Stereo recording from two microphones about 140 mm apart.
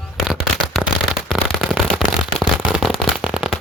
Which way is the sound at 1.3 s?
Centre (ahead or behind).